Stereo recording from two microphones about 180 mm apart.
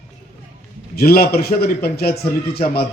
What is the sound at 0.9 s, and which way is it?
A man's voice, 60° left (ahead or behind).